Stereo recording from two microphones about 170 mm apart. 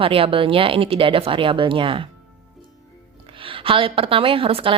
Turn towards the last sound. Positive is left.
turn(degrees=-30)  # may be behind; listen again after turning